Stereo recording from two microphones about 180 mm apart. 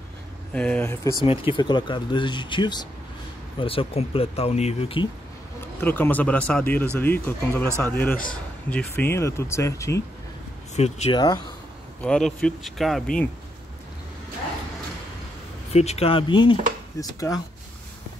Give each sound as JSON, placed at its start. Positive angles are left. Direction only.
{"t": 0.5, "sound": "speech", "side_deg": 5}
{"t": 1.2, "sound": "speech", "side_deg": 30}
{"t": 5.8, "sound": "speech", "side_deg": 10}
{"t": 10.8, "sound": "speech", "side_deg": 35}
{"t": 12.0, "sound": "speech", "side_deg": 5}
{"t": 15.7, "sound": "speech", "side_deg": 35}